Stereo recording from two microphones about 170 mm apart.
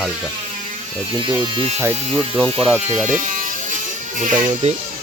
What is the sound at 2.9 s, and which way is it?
Speech, 45° right (ahead or behind).